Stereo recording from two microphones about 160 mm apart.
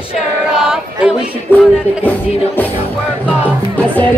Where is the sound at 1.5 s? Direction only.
10° left (ahead or behind).